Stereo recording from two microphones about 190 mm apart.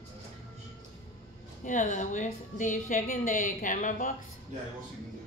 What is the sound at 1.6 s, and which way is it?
A woman's voice, 40° left (ahead or behind).